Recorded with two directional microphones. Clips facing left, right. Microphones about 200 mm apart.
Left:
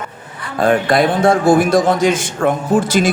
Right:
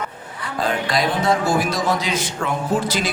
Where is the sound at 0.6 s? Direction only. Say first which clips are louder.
Left 8 dB; 55° left (ahead or behind).